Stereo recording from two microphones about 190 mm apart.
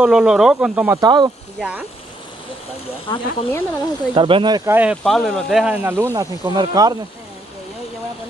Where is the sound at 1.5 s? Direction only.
5° right (ahead or behind).